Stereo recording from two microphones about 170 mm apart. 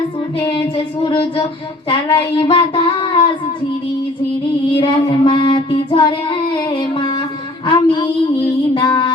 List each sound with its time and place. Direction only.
0.5 s child singing: 30° left (ahead or behind)
4.7 s child singing: 30° left (ahead or behind)